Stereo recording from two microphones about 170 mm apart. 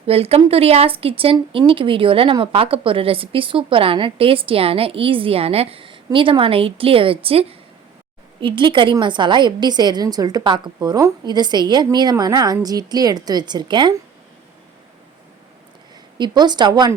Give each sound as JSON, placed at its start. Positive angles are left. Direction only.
{"t": 0.1, "sound": "a woman's voice", "side_deg": -35}
{"t": 16.1, "sound": "a woman's voice", "side_deg": -25}